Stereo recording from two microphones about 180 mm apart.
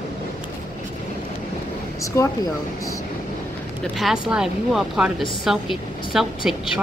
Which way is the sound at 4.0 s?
5° right (ahead or behind).